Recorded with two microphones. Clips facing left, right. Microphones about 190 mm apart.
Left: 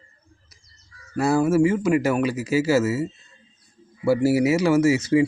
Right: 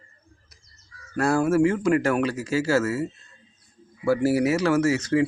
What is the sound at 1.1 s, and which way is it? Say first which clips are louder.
Speech: left 2 dB; 5° left (ahead or behind).